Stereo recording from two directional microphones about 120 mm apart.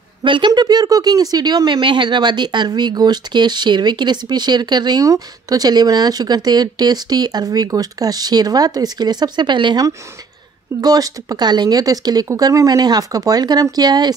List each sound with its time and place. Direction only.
0.2 s speech: 40° right (ahead or behind)